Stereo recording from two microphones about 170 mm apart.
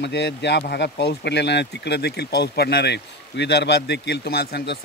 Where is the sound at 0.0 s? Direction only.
90° left.